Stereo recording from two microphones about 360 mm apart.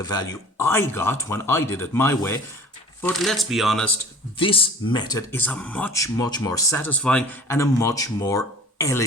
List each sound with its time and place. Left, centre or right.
0.0 s speech: centre
4.4 s speech: centre